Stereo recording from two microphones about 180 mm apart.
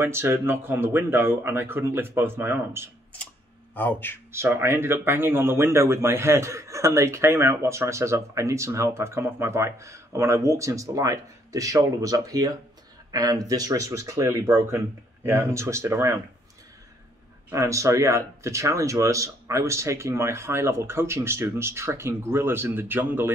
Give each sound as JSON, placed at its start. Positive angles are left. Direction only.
{"t": 0.0, "sound": "speech", "side_deg": -15}
{"t": 3.7, "sound": "a man's voice", "side_deg": 10}
{"t": 4.3, "sound": "speech", "side_deg": -15}
{"t": 17.5, "sound": "speech", "side_deg": -15}